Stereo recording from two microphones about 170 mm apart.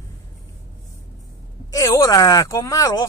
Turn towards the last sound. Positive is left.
turn(degrees=20)  # may be behind; listen again after turning